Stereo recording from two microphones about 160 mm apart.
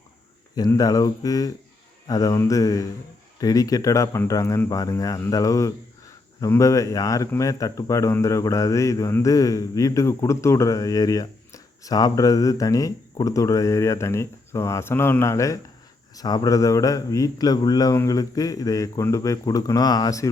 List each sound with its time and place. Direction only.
0.5 s speech: 25° left (ahead or behind)